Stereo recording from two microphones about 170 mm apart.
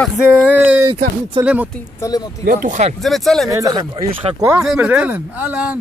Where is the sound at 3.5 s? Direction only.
20° right (ahead or behind).